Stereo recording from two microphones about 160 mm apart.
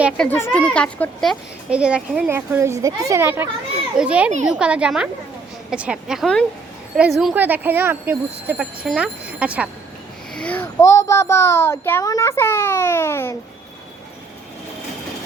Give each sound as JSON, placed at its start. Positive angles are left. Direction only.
{"t": 0.2, "sound": "a woman's voice", "side_deg": 15}
{"t": 2.3, "sound": "a woman's voice", "side_deg": -15}
{"t": 10.3, "sound": "a child's voice", "side_deg": 10}
{"t": 10.8, "sound": "a child's voice", "side_deg": 20}